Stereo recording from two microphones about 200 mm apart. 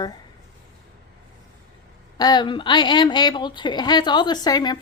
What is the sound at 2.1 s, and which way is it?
A woman's voice, 20° left (ahead or behind).